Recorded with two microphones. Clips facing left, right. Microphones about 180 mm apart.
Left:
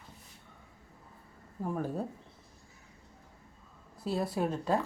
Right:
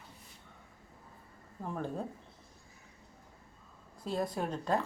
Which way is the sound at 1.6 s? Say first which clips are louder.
Left 3 dB; 5° left (ahead or behind).